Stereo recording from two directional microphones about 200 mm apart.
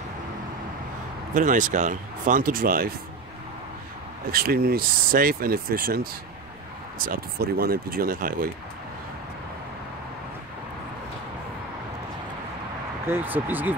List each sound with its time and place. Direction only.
1.3 s speech: 40° right (ahead or behind)
4.3 s speech: 50° right (ahead or behind)
7.1 s speech: 50° right (ahead or behind)
13.0 s speech: 10° right (ahead or behind)